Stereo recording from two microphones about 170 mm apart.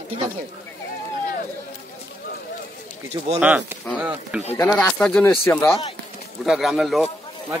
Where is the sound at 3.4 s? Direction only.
10° right (ahead or behind).